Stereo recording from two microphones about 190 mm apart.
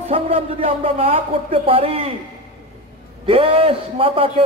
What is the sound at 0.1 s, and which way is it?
Speech, 30° right (ahead or behind).